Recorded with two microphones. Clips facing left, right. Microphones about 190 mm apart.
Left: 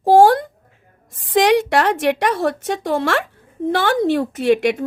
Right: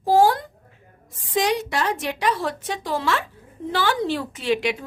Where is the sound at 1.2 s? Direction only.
85° left.